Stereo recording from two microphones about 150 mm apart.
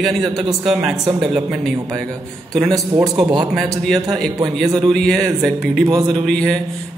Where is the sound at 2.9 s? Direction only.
35° right (ahead or behind).